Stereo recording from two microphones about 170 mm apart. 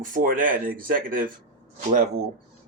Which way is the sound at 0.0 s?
55° right (ahead or behind).